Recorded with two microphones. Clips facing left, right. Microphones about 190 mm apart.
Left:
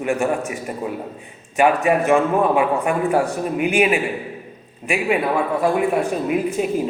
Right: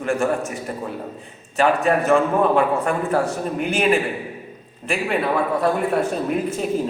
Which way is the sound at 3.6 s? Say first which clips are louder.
Left 1 dB; 10° left (ahead or behind).